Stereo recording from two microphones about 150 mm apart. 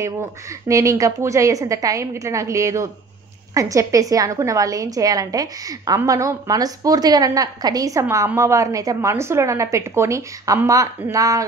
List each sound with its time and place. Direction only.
0.7 s a woman's voice: 20° right (ahead or behind)